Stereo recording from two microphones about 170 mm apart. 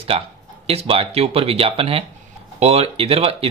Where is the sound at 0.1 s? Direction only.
35° right (ahead or behind).